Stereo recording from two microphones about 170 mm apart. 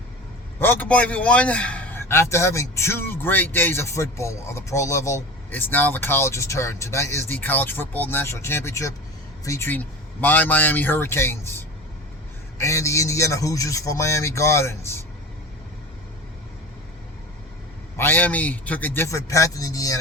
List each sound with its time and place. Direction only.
0.6 s a man's voice: 10° left (ahead or behind)
17.9 s a man's voice: 10° left (ahead or behind)